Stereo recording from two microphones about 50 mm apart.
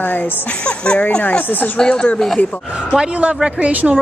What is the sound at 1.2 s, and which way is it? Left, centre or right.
Speech, left.